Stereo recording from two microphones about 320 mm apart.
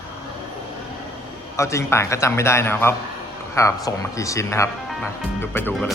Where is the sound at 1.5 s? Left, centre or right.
Centre.